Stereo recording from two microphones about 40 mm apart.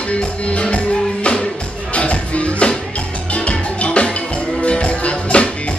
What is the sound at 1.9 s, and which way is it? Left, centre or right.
Music, left.